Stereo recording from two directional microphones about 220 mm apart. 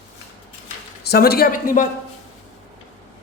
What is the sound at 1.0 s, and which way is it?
Speech, 45° left (ahead or behind).